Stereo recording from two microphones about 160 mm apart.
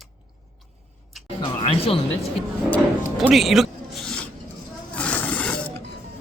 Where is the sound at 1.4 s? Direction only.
35° left (ahead or behind).